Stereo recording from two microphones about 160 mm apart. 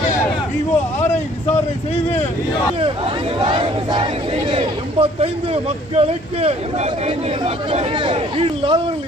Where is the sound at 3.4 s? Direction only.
30° right (ahead or behind).